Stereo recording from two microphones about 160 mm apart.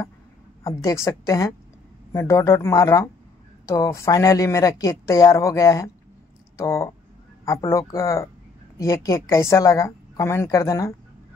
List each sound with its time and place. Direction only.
0.7 s a woman's voice: 20° left (ahead or behind)